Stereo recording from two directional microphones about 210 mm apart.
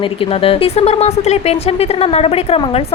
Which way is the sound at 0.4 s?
25° left (ahead or behind).